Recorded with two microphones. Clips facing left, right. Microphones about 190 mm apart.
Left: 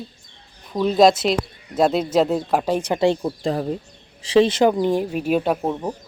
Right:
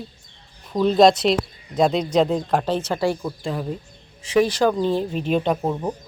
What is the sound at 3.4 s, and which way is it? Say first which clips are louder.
Speech: left 4 dB; 40° left (ahead or behind).